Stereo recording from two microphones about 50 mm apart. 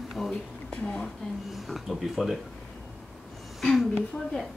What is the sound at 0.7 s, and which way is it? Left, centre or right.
Speech, centre.